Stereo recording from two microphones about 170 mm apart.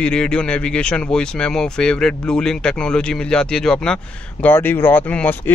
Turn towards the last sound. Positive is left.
turn(degrees=10)  # may be behind; listen again after turning